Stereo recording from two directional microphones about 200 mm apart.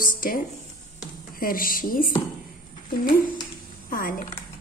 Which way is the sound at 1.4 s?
45° left (ahead or behind).